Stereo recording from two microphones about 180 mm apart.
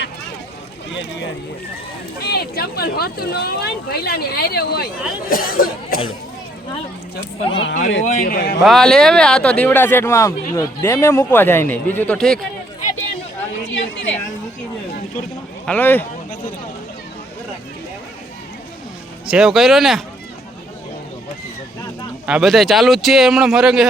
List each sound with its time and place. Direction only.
2.2 s speech: 60° left (ahead or behind)
7.5 s speech: 90° left
8.0 s speech: 55° left (ahead or behind)
8.6 s speech: 5° left (ahead or behind)
13.7 s speech: 90° left
15.6 s speech: 10° left (ahead or behind)
19.3 s a man's voice: 5° right (ahead or behind)
22.3 s a man's voice: centre (ahead or behind)